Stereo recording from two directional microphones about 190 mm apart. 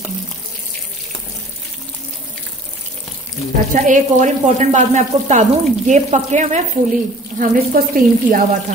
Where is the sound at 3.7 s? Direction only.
40° right (ahead or behind).